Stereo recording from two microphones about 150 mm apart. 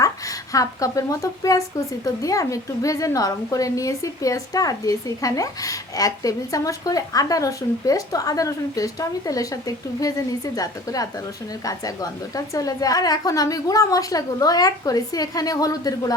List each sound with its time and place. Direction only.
0.0 s a woman's voice: 20° left (ahead or behind)